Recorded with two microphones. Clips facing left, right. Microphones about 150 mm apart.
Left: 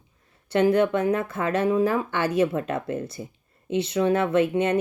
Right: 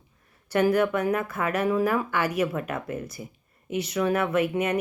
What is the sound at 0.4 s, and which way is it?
Speech, 25° left (ahead or behind).